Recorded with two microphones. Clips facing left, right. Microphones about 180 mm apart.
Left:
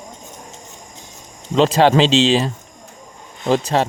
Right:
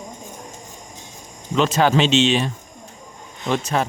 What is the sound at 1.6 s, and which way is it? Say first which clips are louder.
Speech: left 4 dB; 30° left (ahead or behind).